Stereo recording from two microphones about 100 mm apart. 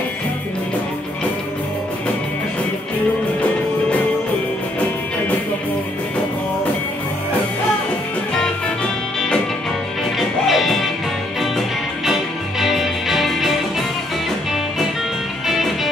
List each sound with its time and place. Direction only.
10.1 s music: centre (ahead or behind)
15.4 s music: centre (ahead or behind)